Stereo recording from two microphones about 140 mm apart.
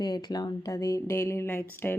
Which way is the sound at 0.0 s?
30° left (ahead or behind).